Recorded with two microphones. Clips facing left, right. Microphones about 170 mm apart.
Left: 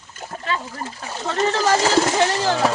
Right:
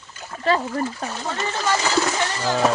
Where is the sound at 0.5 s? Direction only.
40° right (ahead or behind).